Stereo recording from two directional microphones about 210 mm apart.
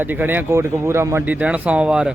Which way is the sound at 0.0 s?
10° right (ahead or behind).